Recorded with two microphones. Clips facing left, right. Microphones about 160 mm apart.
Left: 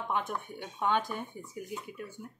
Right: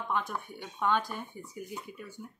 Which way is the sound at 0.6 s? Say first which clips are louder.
Even; 15° left (ahead or behind).